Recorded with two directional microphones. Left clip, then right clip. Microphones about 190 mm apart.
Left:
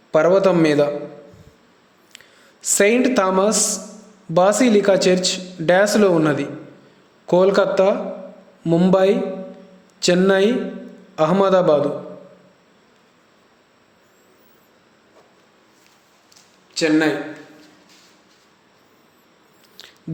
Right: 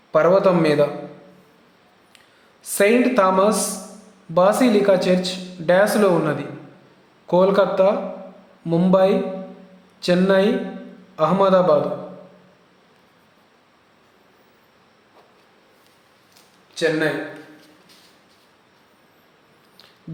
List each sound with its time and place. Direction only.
0.1 s speech: 30° left (ahead or behind)
2.1 s a woman's voice: 35° left (ahead or behind)
16.7 s speech: 45° left (ahead or behind)